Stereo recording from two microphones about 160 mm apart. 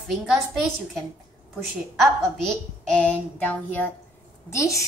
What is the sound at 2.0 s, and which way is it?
A woman's voice, 5° left (ahead or behind).